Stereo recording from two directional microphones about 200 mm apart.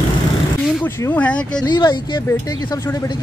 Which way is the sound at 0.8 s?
10° left (ahead or behind).